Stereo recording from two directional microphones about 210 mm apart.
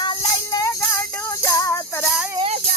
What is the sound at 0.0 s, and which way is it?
Music, 20° left (ahead or behind).